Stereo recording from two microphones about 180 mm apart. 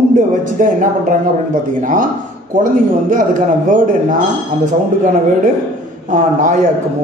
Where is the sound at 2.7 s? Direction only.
45° right (ahead or behind).